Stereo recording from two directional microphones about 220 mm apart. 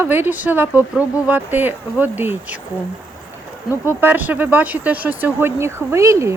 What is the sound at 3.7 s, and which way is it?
Speech, 10° right (ahead or behind).